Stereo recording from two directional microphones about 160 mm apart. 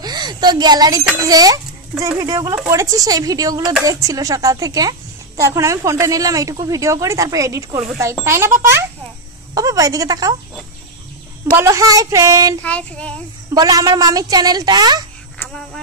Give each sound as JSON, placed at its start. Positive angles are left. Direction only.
{"t": 0.0, "sound": "a child's voice", "side_deg": -25}
{"t": 11.5, "sound": "a woman's voice", "side_deg": -20}
{"t": 12.6, "sound": "speech", "side_deg": 5}
{"t": 13.6, "sound": "a woman's voice", "side_deg": -25}
{"t": 15.4, "sound": "a sound", "side_deg": 5}